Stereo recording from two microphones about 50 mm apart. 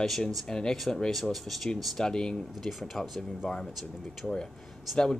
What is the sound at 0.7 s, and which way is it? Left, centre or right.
Speech, centre.